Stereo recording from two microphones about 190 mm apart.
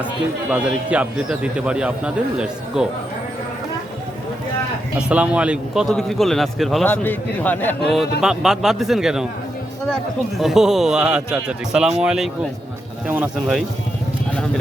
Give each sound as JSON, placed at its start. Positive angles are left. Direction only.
{"t": 0.5, "sound": "speech", "side_deg": -5}
{"t": 4.9, "sound": "speech", "side_deg": -5}
{"t": 8.2, "sound": "speech", "side_deg": -5}